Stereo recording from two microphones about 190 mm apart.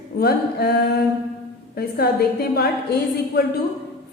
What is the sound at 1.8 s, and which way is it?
Speech, 55° left (ahead or behind).